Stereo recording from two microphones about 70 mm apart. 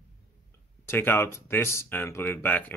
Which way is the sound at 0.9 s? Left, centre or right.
Left.